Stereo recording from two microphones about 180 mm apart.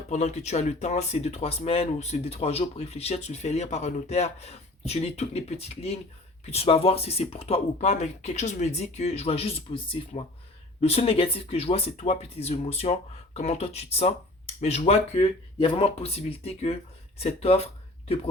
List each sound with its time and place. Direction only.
0.1 s speech: 40° left (ahead or behind)